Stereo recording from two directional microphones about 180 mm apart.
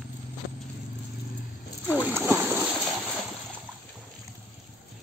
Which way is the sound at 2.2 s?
10° right (ahead or behind).